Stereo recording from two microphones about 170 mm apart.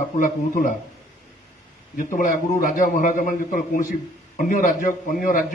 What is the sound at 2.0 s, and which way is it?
A man's voice, 55° left (ahead or behind).